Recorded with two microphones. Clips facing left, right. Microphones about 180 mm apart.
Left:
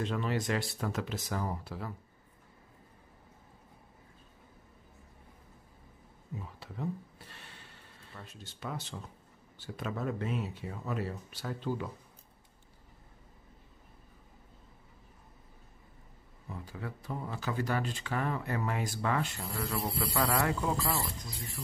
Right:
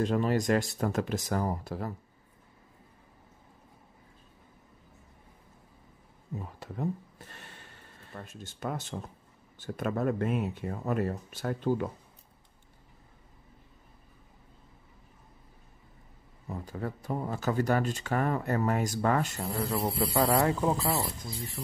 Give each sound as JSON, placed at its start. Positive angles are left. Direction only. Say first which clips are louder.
{"t": 0.0, "sound": "speech", "louder": "right 6 dB", "side_deg": -45}
{"t": 6.6, "sound": "a sound", "louder": "right 4 dB", "side_deg": -45}
{"t": 9.6, "sound": "speech", "louder": "right 6 dB", "side_deg": -50}
{"t": 16.4, "sound": "speech", "louder": "right 6 dB", "side_deg": -45}
{"t": 19.5, "sound": "speech", "louder": "right 5 dB", "side_deg": -25}